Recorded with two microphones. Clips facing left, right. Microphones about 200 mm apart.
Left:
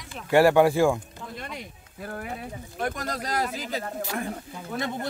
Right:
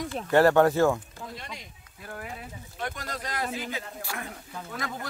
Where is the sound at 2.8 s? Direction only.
45° left (ahead or behind).